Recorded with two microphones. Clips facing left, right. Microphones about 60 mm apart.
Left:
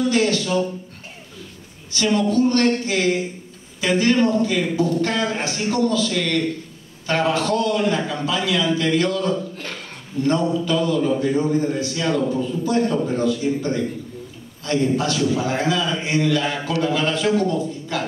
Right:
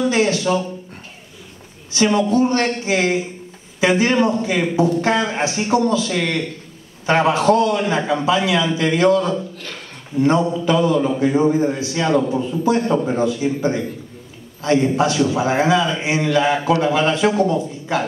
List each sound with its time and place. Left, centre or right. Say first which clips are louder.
0.0 s a man's voice: right 2 dB; right
1.9 s a man's voice: right 3 dB; right